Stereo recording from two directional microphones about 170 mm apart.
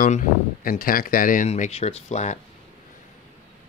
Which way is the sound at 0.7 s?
60° left (ahead or behind).